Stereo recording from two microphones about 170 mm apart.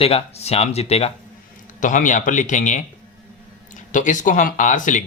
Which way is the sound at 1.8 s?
50° left (ahead or behind).